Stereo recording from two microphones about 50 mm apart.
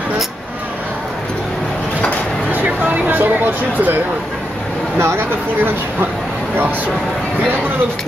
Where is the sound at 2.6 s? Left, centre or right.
Right.